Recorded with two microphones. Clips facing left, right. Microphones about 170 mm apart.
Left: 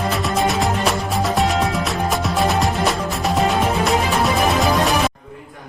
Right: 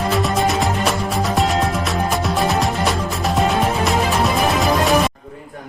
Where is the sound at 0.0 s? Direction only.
Centre (ahead or behind).